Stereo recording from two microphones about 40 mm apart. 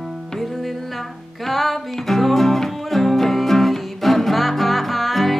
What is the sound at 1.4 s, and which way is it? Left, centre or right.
Music, centre.